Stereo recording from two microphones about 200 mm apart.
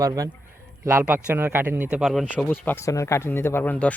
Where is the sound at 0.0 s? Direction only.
15° right (ahead or behind).